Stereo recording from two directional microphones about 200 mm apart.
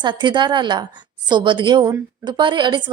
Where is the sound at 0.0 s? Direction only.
20° right (ahead or behind).